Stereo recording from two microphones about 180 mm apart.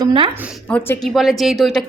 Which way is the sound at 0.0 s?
25° right (ahead or behind).